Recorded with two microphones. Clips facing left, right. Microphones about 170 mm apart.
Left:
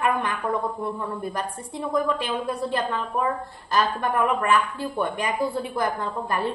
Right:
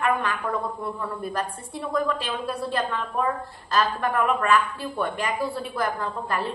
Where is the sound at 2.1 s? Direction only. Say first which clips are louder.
Left 2 dB; 20° left (ahead or behind).